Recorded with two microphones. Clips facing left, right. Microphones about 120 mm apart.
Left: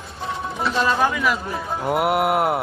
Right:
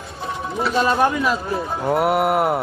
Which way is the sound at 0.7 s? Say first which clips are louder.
Right 3 dB; 15° right (ahead or behind).